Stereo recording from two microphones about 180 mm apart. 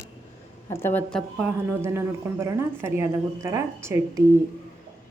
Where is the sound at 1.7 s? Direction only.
15° right (ahead or behind).